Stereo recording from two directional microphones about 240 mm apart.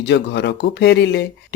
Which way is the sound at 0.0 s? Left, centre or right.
Left.